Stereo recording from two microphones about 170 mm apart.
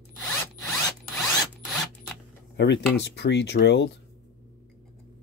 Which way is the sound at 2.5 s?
90° left.